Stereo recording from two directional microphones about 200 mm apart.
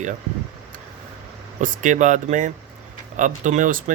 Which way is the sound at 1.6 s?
40° right (ahead or behind).